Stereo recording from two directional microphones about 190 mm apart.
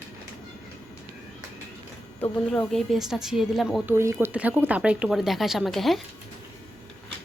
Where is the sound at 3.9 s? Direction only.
15° right (ahead or behind).